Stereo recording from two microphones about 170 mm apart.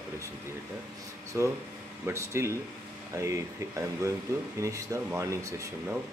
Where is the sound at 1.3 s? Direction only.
15° right (ahead or behind).